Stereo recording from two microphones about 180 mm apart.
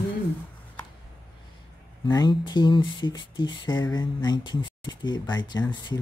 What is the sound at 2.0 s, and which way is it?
Speech, 20° left (ahead or behind).